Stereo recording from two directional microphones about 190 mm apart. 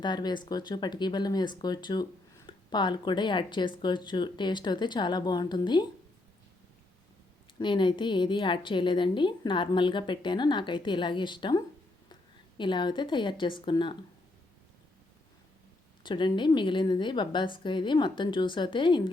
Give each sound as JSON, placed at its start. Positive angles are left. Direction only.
{"t": 0.0, "sound": "speech", "side_deg": 20}
{"t": 7.6, "sound": "speech", "side_deg": 25}
{"t": 16.0, "sound": "speech", "side_deg": 25}